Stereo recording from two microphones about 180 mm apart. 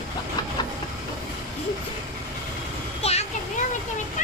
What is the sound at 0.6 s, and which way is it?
Vehicle, 25° left (ahead or behind).